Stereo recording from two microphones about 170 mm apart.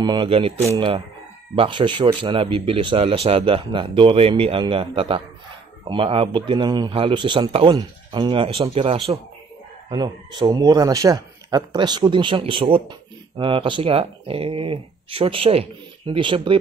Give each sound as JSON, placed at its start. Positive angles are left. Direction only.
{"t": 0.0, "sound": "a man's voice", "side_deg": -30}